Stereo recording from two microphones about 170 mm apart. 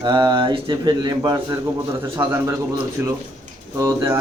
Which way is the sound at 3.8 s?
15° right (ahead or behind).